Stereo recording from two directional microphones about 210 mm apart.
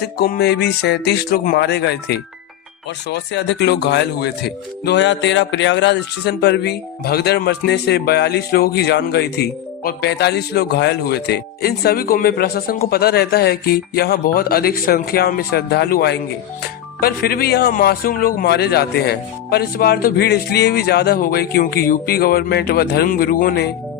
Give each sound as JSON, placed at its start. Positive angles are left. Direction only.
{"t": 0.0, "sound": "speech", "side_deg": 50}